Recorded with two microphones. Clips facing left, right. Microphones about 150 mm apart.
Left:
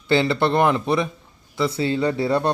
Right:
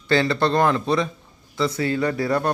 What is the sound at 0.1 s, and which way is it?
A man's voice, 20° left (ahead or behind).